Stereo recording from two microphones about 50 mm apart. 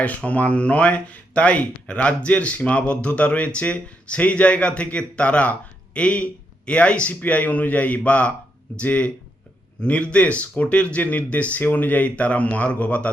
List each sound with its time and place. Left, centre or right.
0.0 s speech: left